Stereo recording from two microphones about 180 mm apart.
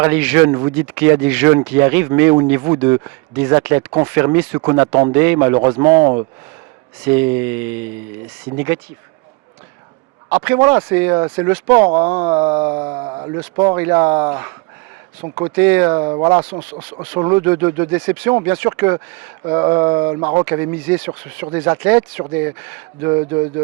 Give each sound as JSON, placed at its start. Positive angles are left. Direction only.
{"t": 0.0, "sound": "speech", "side_deg": -10}
{"t": 6.0, "sound": "speech", "side_deg": -25}
{"t": 7.0, "sound": "speech", "side_deg": -10}
{"t": 10.2, "sound": "speech", "side_deg": -10}
{"t": 11.9, "sound": "speech", "side_deg": -30}
{"t": 15.2, "sound": "speech", "side_deg": -30}
{"t": 15.5, "sound": "speech", "side_deg": -10}